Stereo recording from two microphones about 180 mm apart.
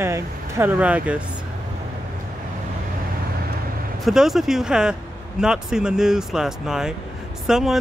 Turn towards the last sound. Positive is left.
turn(degrees=-5)  # may be behind; listen again after turning